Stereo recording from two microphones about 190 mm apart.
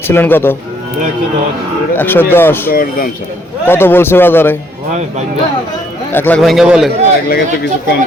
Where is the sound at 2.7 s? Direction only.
50° left (ahead or behind).